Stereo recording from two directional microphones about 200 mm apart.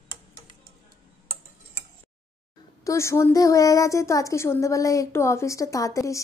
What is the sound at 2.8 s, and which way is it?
A woman's voice, 15° left (ahead or behind).